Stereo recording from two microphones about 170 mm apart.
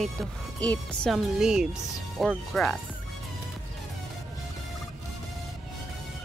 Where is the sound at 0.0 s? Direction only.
5° left (ahead or behind).